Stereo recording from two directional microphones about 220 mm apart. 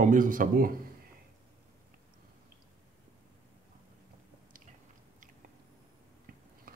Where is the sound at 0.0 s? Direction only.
35° right (ahead or behind).